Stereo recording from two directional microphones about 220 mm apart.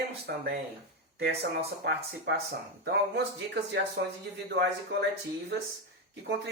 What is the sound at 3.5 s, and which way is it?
Speech, 50° right (ahead or behind).